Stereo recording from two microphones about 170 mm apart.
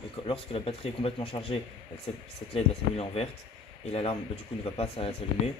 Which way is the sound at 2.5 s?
35° left (ahead or behind).